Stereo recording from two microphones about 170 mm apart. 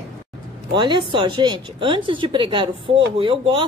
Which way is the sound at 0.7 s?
25° right (ahead or behind).